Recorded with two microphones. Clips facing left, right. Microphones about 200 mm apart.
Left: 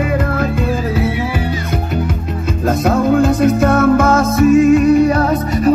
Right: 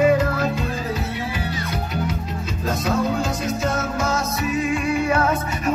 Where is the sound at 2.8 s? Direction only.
55° left (ahead or behind).